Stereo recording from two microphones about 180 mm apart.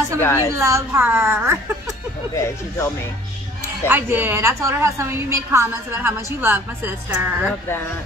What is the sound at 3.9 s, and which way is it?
A woman's voice, 10° right (ahead or behind).